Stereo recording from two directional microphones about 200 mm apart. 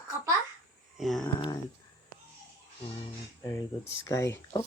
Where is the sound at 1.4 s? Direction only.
20° left (ahead or behind).